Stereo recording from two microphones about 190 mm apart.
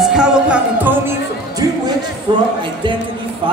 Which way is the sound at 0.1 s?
5° right (ahead or behind).